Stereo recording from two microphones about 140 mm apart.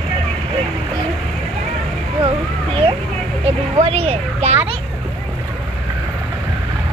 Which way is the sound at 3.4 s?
45° right (ahead or behind).